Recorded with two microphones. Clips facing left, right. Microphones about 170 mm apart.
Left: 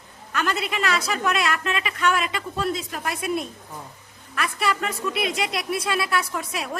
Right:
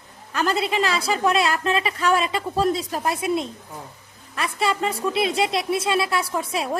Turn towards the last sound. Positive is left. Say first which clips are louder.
# right 5 dB
turn(degrees=-30)  # may be behind; listen again after turning